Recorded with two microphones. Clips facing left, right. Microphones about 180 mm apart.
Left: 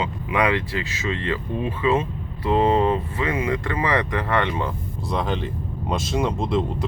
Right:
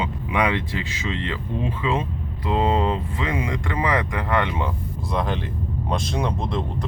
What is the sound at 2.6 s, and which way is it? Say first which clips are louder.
Speech: left 2 dB; 15° right (ahead or behind).